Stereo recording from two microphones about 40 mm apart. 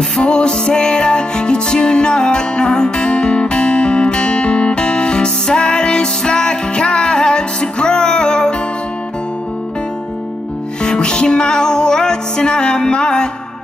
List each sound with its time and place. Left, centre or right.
0.2 s music: left
10.8 s music: left